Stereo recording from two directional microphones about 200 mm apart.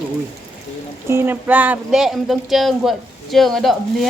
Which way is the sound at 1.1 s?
10° right (ahead or behind).